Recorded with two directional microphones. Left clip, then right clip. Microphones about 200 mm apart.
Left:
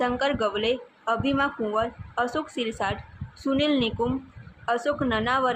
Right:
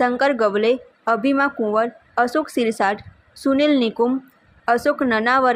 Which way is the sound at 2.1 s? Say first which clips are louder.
Right 9 dB; 40° right (ahead or behind).